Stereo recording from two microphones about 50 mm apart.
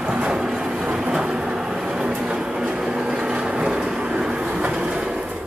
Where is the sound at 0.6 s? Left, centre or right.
Centre.